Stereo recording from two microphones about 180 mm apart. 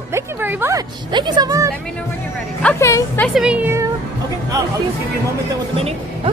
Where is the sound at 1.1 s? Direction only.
20° right (ahead or behind).